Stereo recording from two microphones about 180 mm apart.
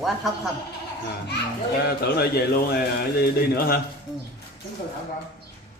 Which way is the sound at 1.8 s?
60° left (ahead or behind).